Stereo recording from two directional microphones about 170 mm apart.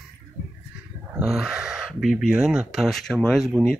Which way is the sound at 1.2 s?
Centre (ahead or behind).